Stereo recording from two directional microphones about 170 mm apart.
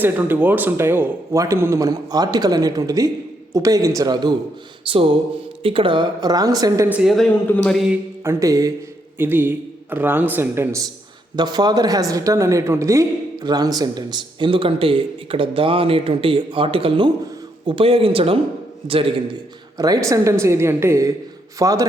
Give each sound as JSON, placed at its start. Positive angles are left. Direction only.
{"t": 0.0, "sound": "a woman's voice", "side_deg": -10}
{"t": 4.8, "sound": "a sound", "side_deg": -30}
{"t": 5.6, "sound": "a woman's voice", "side_deg": -30}
{"t": 6.8, "sound": "speech", "side_deg": -5}
{"t": 7.5, "sound": "a sound", "side_deg": 10}
{"t": 8.2, "sound": "a woman's voice", "side_deg": -15}